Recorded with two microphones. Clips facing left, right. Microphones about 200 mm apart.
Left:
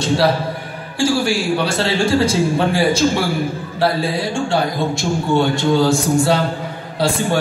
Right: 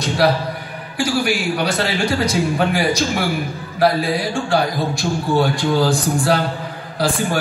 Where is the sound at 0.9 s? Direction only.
30° left (ahead or behind).